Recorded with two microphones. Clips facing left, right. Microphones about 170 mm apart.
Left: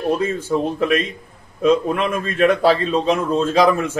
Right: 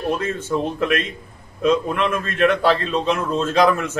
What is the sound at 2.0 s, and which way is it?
A man's voice, 10° left (ahead or behind).